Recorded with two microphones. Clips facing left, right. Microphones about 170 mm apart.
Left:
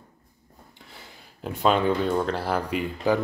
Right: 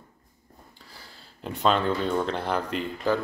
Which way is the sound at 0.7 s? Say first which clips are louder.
Left 4 dB; 20° left (ahead or behind).